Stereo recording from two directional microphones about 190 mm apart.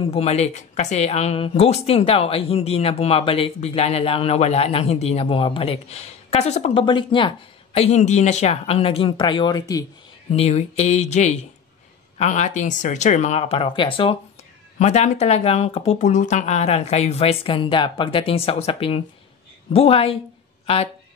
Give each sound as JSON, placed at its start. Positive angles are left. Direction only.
{"t": 0.1, "sound": "speech", "side_deg": 35}
{"t": 10.3, "sound": "speech", "side_deg": 35}